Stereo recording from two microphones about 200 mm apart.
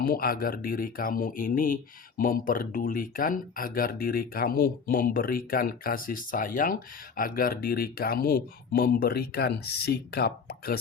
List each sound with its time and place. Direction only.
0.0 s speech: 45° left (ahead or behind)